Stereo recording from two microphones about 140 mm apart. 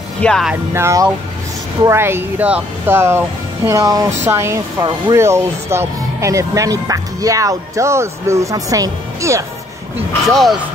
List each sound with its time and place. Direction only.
0.2 s speech: 5° left (ahead or behind)
0.7 s speech: 20° right (ahead or behind)
10.2 s speech: centre (ahead or behind)